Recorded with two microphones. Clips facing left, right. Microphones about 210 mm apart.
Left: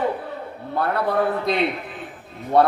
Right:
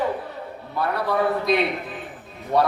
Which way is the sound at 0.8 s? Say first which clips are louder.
Left 1 dB; 55° left (ahead or behind).